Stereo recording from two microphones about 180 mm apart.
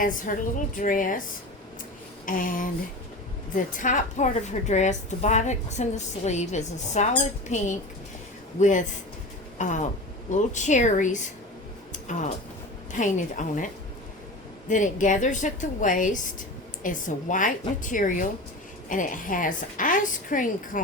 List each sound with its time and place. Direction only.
0.0 s a woman's voice: 50° left (ahead or behind)
2.2 s a woman's voice: 50° left (ahead or behind)
11.9 s a sound: 45° left (ahead or behind)
12.9 s a woman's voice: 40° left (ahead or behind)
14.7 s a woman's voice: 45° left (ahead or behind)